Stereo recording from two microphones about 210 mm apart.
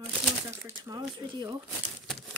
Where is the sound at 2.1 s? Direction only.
Centre (ahead or behind).